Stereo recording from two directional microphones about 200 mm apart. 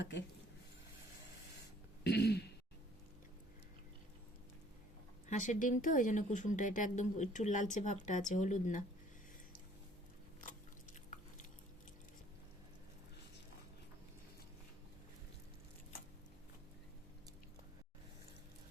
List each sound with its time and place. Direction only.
0.0 s speech: 60° left (ahead or behind)
2.0 s a sound: 55° left (ahead or behind)
5.3 s speech: 40° left (ahead or behind)